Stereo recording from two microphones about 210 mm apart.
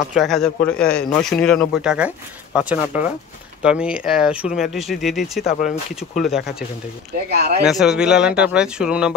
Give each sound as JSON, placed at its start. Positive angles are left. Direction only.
{"t": 0.1, "sound": "speech", "side_deg": 0}
{"t": 5.4, "sound": "speech", "side_deg": 40}
{"t": 5.9, "sound": "speech", "side_deg": 0}
{"t": 7.2, "sound": "speech", "side_deg": -50}
{"t": 7.6, "sound": "speech", "side_deg": 0}